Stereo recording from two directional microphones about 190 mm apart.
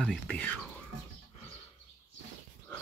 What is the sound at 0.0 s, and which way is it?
Speech, 5° left (ahead or behind).